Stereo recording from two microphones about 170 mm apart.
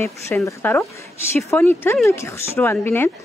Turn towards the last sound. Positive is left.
turn(degrees=15)  # may be behind; listen again after turning